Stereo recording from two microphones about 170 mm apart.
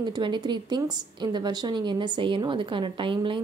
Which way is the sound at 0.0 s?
25° right (ahead or behind).